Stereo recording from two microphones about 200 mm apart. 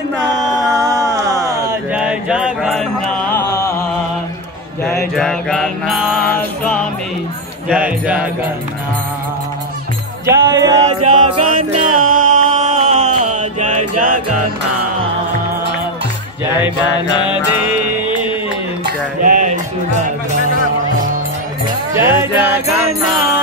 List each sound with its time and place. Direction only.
0.7 s a sound: 20° right (ahead or behind)
3.3 s music: 15° left (ahead or behind)
5.1 s mantra: centre (ahead or behind)
6.2 s music: 10° left (ahead or behind)
7.7 s speech: 10° right (ahead or behind)
10.2 s music: 15° right (ahead or behind)
11.2 s music: 40° right (ahead or behind)
16.5 s music: 20° left (ahead or behind)
19.2 s a sound: 40° right (ahead or behind)
21.9 s music: 15° right (ahead or behind)